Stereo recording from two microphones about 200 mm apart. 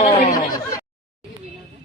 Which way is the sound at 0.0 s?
35° left (ahead or behind).